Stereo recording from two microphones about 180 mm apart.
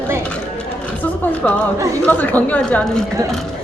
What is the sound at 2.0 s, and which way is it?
Speech, 10° left (ahead or behind).